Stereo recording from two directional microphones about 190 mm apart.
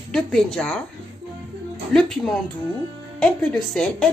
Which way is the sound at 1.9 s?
5° left (ahead or behind).